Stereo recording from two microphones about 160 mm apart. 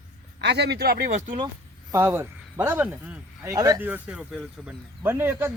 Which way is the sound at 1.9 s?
15° right (ahead or behind).